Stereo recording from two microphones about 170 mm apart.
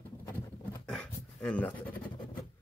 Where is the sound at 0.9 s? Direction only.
5° left (ahead or behind).